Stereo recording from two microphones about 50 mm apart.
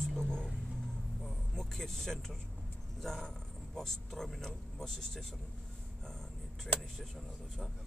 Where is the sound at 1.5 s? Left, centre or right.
Centre.